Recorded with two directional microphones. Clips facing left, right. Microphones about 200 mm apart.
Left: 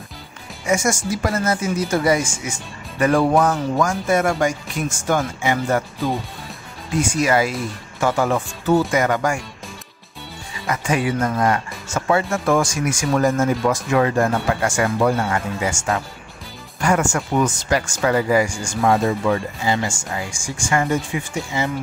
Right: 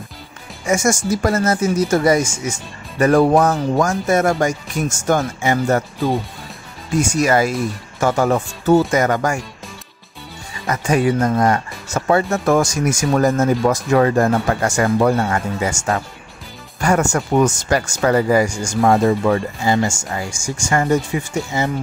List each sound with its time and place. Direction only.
0.7 s speech: 45° right (ahead or behind)
7.0 s speech: 45° right (ahead or behind)
10.7 s speech: 40° right (ahead or behind)